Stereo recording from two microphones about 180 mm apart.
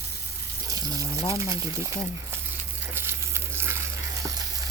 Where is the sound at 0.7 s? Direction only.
20° right (ahead or behind).